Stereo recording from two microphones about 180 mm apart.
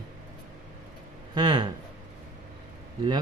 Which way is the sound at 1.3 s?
25° right (ahead or behind).